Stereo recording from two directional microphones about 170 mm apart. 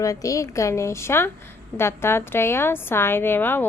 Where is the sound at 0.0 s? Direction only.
20° left (ahead or behind).